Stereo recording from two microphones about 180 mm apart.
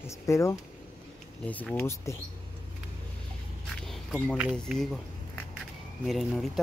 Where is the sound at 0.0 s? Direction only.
15° left (ahead or behind).